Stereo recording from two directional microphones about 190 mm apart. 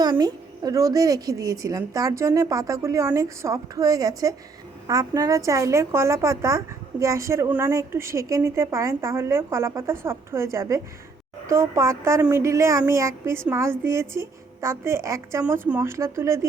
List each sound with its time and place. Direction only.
0.0 s a woman's voice: 20° right (ahead or behind)